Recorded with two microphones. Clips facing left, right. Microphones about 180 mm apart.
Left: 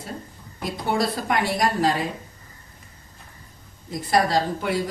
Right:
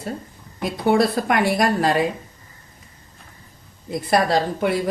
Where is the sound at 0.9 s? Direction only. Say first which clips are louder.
Right 6 dB; 60° right (ahead or behind).